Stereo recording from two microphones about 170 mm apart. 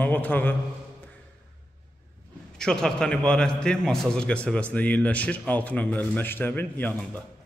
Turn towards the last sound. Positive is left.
turn(degrees=10)  # may be behind; listen again after turning